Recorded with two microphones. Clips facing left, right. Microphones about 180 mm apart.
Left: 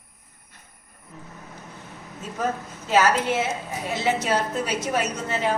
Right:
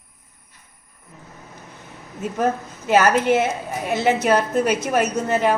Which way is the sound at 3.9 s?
60° right (ahead or behind).